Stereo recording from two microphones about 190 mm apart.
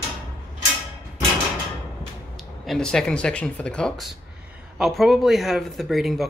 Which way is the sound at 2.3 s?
Centre (ahead or behind).